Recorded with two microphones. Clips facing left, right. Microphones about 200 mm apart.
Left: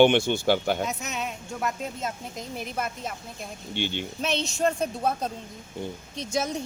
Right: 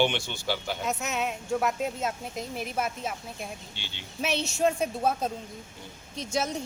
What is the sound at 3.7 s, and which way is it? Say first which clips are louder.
Speech: left 15 dB; 55° left (ahead or behind).